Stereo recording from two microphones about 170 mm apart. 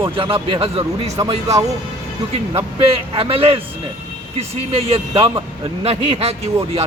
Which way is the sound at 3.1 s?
35° right (ahead or behind).